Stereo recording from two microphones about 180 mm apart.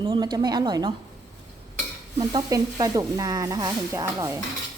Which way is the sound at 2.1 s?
20° right (ahead or behind).